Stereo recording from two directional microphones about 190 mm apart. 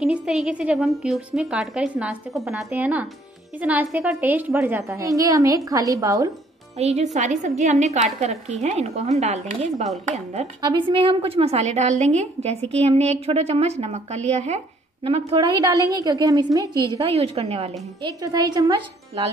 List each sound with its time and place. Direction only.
0.0 s a woman's voice: 5° right (ahead or behind)
6.8 s a woman's voice: 35° right (ahead or behind)
15.9 s a woman's voice: 20° right (ahead or behind)
16.9 s a woman's voice: 30° right (ahead or behind)
18.0 s speech: 20° right (ahead or behind)